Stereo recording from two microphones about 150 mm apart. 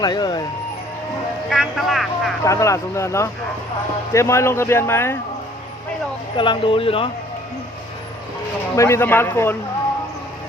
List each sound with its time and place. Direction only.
0.0 s speech: 30° left (ahead or behind)
1.5 s speech: centre (ahead or behind)
2.4 s speech: 20° left (ahead or behind)
6.3 s speech: 35° left (ahead or behind)
8.7 s speech: 20° left (ahead or behind)